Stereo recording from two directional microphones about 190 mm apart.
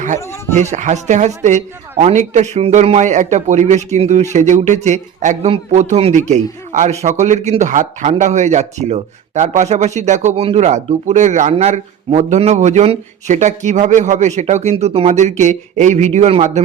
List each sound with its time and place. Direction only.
0.0 s speech: 40° right (ahead or behind)